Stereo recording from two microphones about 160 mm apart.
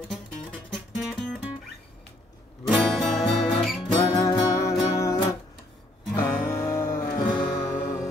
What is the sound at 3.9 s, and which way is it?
Music, 25° left (ahead or behind).